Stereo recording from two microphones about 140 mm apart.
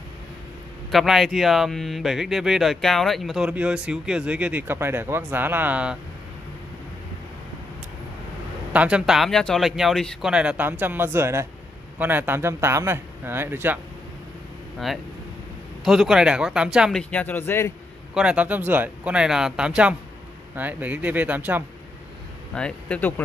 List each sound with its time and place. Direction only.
0.9 s speech: centre (ahead or behind)
8.7 s speech: 5° right (ahead or behind)
15.8 s speech: centre (ahead or behind)
17.1 s speech: 10° left (ahead or behind)
18.1 s speech: 5° right (ahead or behind)
22.5 s speech: 5° left (ahead or behind)